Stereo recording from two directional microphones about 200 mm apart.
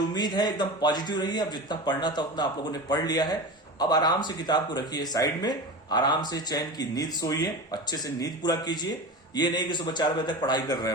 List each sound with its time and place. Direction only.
0.1 s speech: 20° left (ahead or behind)